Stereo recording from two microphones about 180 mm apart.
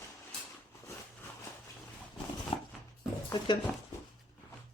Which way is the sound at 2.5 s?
30° left (ahead or behind).